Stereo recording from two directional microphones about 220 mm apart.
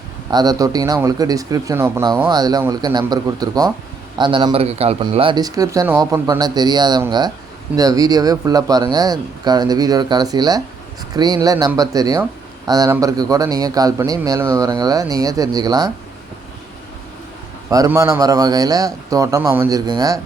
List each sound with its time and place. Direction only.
0.3 s speech: 15° right (ahead or behind)
17.7 s speech: 15° right (ahead or behind)